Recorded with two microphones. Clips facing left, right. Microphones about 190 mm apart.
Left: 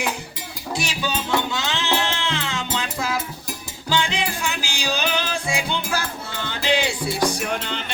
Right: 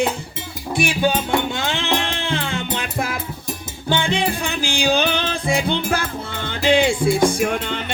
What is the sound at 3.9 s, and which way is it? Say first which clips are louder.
Music: right 4 dB; 55° right (ahead or behind).